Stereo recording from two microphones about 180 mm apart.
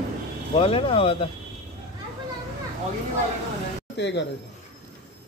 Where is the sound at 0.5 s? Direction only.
30° left (ahead or behind).